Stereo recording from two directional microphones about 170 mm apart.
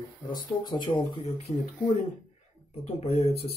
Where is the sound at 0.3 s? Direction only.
25° left (ahead or behind).